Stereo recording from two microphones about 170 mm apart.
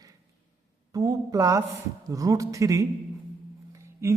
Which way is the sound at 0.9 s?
20° right (ahead or behind).